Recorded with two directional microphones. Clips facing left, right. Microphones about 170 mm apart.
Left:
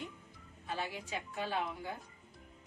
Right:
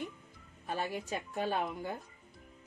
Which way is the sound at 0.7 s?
50° right (ahead or behind).